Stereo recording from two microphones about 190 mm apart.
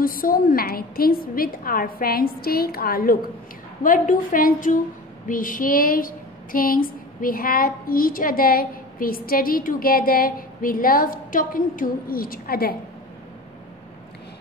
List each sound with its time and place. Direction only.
0.0 s a woman's voice: 50° left (ahead or behind)